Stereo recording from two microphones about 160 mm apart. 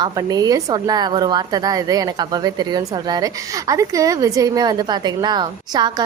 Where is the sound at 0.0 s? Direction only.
25° right (ahead or behind).